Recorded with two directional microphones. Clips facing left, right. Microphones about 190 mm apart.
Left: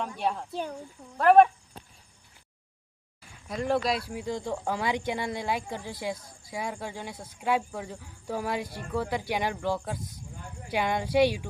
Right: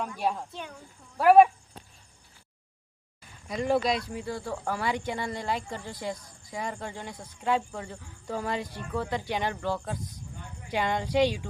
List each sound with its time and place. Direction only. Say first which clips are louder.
0.2 s speech: right 1 dB; 5° right (ahead or behind)
0.5 s speech: left 7 dB; 35° left (ahead or behind)
1.2 s speech: right 1 dB; 5° right (ahead or behind)
3.4 s speech: right 1 dB; centre (ahead or behind)